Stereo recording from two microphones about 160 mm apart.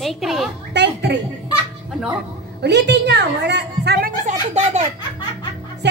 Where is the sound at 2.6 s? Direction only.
90° right.